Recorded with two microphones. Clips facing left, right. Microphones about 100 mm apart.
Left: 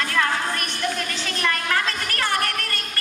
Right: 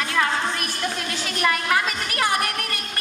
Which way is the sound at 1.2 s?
5° right (ahead or behind).